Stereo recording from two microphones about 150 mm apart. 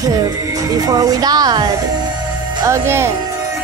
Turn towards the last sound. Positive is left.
turn(degrees=-20)  # may be behind; listen again after turning